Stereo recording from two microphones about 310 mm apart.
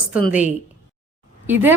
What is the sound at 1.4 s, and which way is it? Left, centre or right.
Speech, centre.